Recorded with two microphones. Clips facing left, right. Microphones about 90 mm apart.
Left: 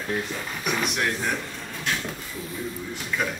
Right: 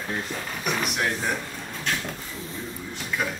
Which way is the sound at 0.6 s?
Centre (ahead or behind).